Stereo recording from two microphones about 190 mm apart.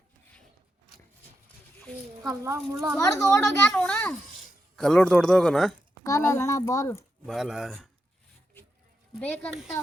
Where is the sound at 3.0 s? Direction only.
15° left (ahead or behind).